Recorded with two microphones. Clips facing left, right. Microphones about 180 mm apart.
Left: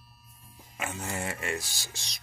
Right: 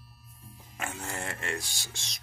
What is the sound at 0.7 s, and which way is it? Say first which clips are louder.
Speech: left 2 dB; 10° left (ahead or behind).